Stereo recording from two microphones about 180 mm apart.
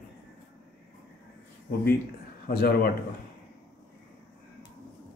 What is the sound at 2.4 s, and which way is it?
Speech, 60° left (ahead or behind).